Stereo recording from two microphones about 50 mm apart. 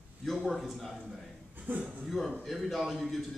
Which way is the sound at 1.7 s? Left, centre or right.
Right.